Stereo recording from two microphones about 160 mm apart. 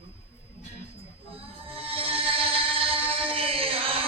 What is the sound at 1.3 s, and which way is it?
Music, 35° right (ahead or behind).